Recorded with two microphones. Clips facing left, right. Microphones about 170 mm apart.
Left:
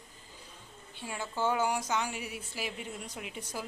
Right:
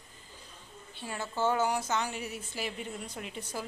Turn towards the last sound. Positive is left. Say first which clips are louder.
# right 1 dB
turn(degrees=5)  # may be behind; listen again after turning